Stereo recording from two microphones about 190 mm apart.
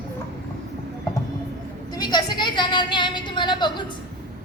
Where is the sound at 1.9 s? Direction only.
20° left (ahead or behind).